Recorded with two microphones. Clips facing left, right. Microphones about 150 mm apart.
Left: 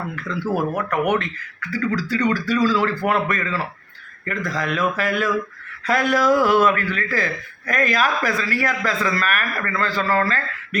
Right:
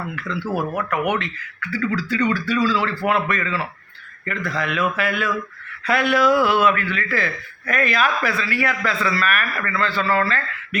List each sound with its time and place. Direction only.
1.0 s a man's voice: 40° left (ahead or behind)